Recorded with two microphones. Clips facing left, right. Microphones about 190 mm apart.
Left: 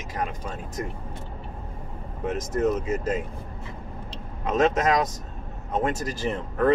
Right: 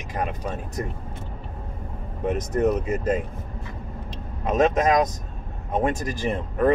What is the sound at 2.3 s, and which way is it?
Speech, 65° right (ahead or behind).